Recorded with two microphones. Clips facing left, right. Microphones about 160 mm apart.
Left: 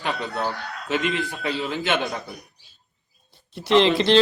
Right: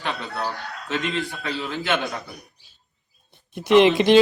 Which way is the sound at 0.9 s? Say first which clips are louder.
Left 2 dB; 15° left (ahead or behind).